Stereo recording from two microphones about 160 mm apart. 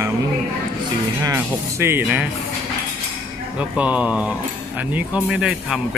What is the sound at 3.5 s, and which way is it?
Speech, 10° right (ahead or behind).